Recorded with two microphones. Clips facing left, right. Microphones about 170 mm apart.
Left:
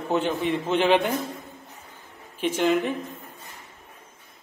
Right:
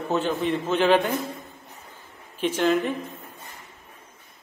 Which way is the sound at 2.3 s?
10° left (ahead or behind).